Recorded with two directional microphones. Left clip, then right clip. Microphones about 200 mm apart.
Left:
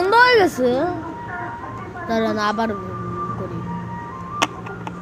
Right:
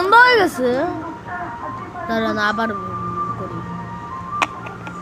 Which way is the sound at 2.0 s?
15° right (ahead or behind).